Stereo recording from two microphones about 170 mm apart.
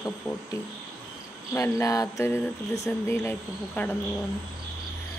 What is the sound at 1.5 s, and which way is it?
Speech, 15° left (ahead or behind).